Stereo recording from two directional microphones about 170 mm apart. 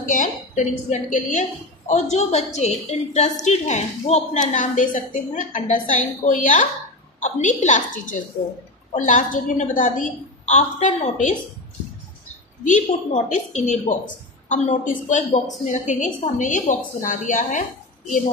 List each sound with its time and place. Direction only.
0.0 s a woman's voice: 50° left (ahead or behind)
12.6 s a woman's voice: 45° left (ahead or behind)